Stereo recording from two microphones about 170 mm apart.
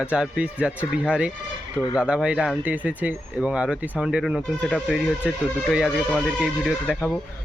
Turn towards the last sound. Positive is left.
turn(degrees=5)  # may be behind; listen again after turning